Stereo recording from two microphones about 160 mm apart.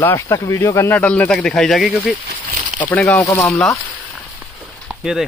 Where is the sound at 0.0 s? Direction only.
20° left (ahead or behind).